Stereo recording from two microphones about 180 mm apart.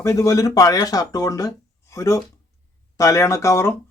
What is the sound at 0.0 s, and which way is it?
Speech, 15° left (ahead or behind).